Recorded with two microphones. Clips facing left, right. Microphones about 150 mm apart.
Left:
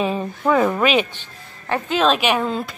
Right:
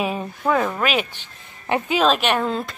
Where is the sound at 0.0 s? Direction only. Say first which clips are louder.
Left 2 dB; 10° right (ahead or behind).